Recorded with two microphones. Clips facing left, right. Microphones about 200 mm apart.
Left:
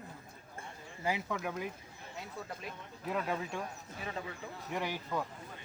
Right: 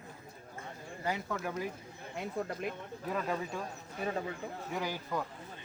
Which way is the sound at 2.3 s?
50° right (ahead or behind).